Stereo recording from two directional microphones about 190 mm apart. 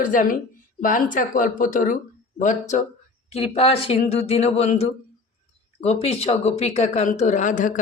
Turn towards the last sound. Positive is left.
turn(degrees=40)  # may be behind; listen again after turning